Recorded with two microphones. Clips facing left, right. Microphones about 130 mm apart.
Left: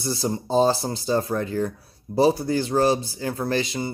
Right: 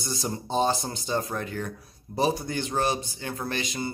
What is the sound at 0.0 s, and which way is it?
A man's voice, 35° left (ahead or behind).